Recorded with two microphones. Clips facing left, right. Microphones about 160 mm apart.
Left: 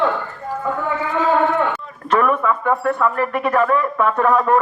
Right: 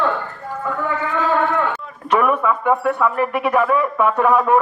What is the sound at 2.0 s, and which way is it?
Speech, 10° right (ahead or behind).